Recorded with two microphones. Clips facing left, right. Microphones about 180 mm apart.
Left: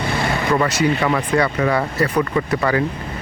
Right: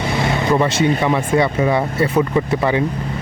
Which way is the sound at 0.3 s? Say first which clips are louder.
Right 2 dB; 20° right (ahead or behind).